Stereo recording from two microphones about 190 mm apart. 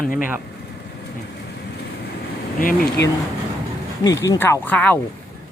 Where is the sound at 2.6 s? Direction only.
55° left (ahead or behind).